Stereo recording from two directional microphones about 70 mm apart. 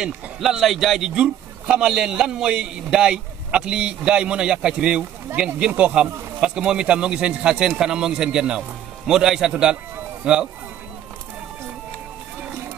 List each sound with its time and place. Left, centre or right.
0.0 s a man's voice: centre